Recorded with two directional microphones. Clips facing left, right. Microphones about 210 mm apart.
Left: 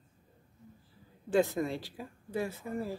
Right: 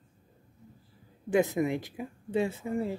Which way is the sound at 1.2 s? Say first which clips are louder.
Right 2 dB; 20° right (ahead or behind).